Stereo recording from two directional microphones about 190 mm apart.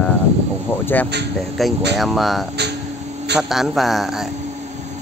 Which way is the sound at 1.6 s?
Centre (ahead or behind).